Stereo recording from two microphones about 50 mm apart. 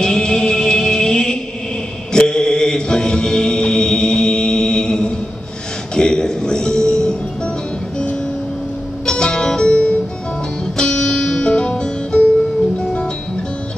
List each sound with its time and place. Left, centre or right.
0.0 s music: centre
2.1 s mantra: centre
5.9 s music: centre
9.0 s music: centre
10.8 s music: centre